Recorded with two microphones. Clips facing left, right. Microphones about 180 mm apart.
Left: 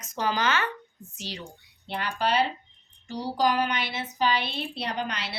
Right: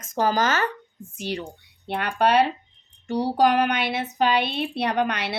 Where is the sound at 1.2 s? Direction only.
55° right (ahead or behind).